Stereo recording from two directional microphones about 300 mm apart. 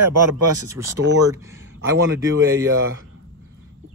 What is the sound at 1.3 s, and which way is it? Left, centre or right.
Speech, centre.